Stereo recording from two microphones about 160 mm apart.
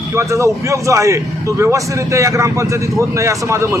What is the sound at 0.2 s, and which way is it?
Speech, 20° right (ahead or behind).